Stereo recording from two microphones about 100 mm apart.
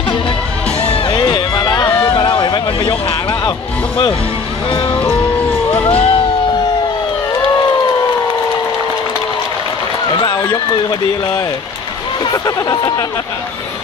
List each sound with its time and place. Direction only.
1.1 s run: 45° left (ahead or behind)
1.9 s run: 20° left (ahead or behind)
2.1 s a sound: 50° left (ahead or behind)
5.9 s music: 65° left (ahead or behind)
10.1 s a sound: 45° left (ahead or behind)
12.3 s speech: 40° left (ahead or behind)